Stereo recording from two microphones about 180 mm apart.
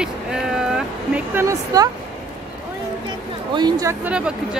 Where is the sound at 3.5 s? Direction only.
25° right (ahead or behind).